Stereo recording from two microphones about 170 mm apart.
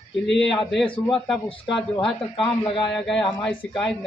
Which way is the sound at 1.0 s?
Centre (ahead or behind).